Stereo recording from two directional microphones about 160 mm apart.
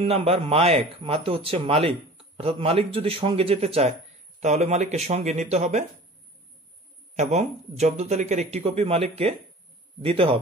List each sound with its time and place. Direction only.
0.0 s a man's voice: 35° right (ahead or behind)
7.2 s a man's voice: 45° right (ahead or behind)